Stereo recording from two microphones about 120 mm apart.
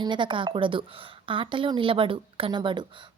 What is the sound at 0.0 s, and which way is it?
A woman's voice, 40° right (ahead or behind).